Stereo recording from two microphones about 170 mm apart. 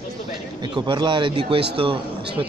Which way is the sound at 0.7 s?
25° right (ahead or behind).